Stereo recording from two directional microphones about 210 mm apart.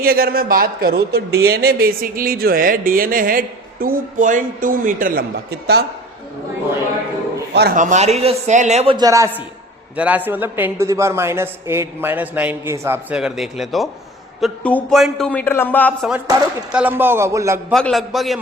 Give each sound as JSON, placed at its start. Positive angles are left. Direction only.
{"t": 0.0, "sound": "speech", "side_deg": -45}
{"t": 7.8, "sound": "a man's voice", "side_deg": -35}
{"t": 16.7, "sound": "a man's voice", "side_deg": -10}
{"t": 17.7, "sound": "a man's voice", "side_deg": 0}